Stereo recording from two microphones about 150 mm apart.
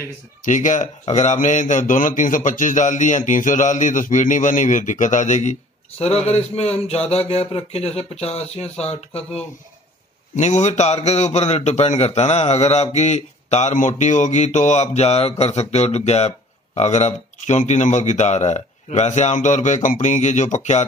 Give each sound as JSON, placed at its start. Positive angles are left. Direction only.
{"t": 0.5, "sound": "a man's voice", "side_deg": 55}